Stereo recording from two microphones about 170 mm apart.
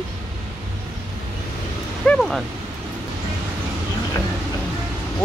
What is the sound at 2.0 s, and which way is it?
Speech, 5° left (ahead or behind).